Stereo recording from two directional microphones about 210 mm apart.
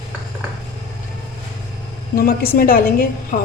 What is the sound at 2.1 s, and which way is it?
A woman's voice, 45° left (ahead or behind).